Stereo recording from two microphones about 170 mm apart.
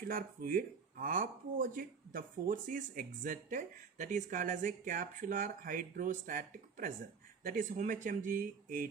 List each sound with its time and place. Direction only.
0.1 s speech: 55° right (ahead or behind)